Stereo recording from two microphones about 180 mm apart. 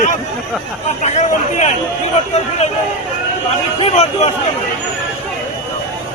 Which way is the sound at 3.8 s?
35° left (ahead or behind).